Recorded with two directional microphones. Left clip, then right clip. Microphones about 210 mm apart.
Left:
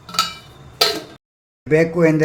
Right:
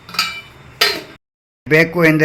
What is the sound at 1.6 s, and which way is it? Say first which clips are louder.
Speech: right 3 dB; 5° right (ahead or behind).